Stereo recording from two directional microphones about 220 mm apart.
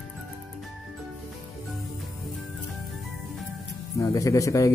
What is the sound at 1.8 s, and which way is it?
Music, centre (ahead or behind).